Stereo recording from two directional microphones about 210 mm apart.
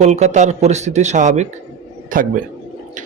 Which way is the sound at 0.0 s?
35° right (ahead or behind).